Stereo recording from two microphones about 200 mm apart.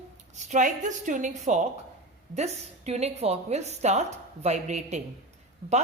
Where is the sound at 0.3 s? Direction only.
35° right (ahead or behind).